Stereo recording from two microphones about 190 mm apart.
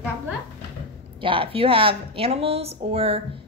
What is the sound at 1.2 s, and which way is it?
Speech, 30° right (ahead or behind).